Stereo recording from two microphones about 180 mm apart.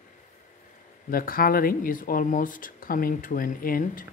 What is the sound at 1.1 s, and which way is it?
Speech, 50° left (ahead or behind).